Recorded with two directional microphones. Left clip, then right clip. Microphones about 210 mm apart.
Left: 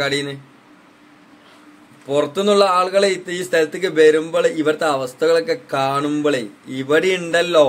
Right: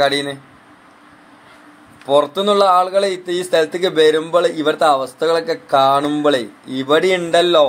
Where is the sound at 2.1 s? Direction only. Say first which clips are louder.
Right 3 dB; centre (ahead or behind).